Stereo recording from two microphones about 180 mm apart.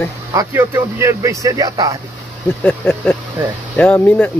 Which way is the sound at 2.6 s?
10° left (ahead or behind).